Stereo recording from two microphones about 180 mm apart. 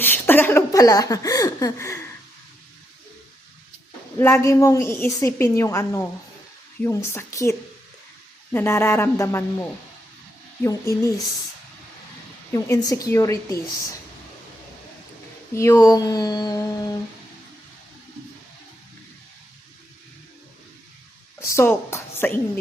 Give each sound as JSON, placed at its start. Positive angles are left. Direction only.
{"t": 0.0, "sound": "speech", "side_deg": 10}
{"t": 4.2, "sound": "a woman's voice", "side_deg": 15}
{"t": 8.5, "sound": "a woman's voice", "side_deg": 15}
{"t": 12.5, "sound": "a woman's voice", "side_deg": 15}
{"t": 15.5, "sound": "speech", "side_deg": 15}
{"t": 21.4, "sound": "a woman's voice", "side_deg": 15}